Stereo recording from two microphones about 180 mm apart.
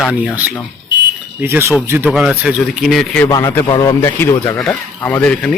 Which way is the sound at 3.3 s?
20° left (ahead or behind).